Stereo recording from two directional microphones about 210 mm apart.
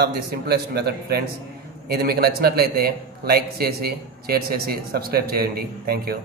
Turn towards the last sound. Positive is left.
turn(degrees=-45)  # may be behind; listen again after turning